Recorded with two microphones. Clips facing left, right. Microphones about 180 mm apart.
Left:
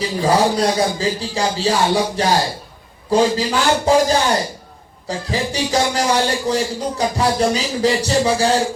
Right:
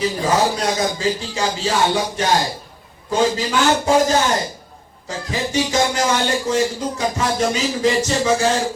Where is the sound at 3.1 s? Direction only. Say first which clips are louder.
Left 3 dB; 35° left (ahead or behind).